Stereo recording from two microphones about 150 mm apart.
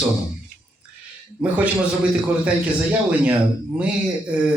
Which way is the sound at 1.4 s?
10° right (ahead or behind).